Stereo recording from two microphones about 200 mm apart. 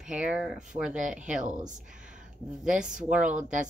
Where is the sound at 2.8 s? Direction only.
40° right (ahead or behind).